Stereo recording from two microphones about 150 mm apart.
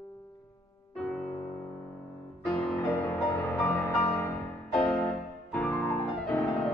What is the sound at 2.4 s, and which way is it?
Music, 5° left (ahead or behind).